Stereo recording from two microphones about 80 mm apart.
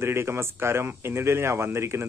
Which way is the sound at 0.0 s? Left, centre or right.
Right.